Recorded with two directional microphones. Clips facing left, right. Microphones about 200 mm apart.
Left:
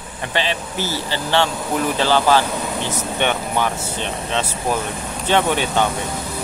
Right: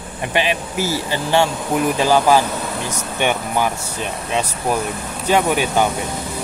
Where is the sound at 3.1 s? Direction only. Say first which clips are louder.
Right 2 dB; 10° right (ahead or behind).